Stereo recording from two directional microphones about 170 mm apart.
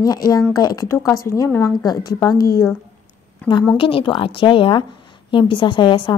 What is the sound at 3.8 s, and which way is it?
A woman's voice, 30° left (ahead or behind).